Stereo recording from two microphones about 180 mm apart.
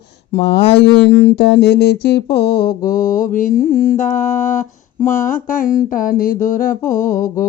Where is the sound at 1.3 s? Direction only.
65° left (ahead or behind).